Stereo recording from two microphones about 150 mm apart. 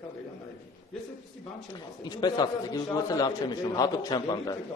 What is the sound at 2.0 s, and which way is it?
A man's voice, 30° left (ahead or behind).